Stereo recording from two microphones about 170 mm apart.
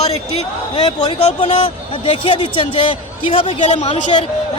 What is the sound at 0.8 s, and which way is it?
A man's voice, 35° left (ahead or behind).